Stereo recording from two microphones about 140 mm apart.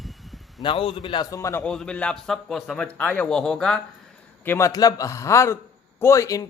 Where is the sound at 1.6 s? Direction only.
5° left (ahead or behind).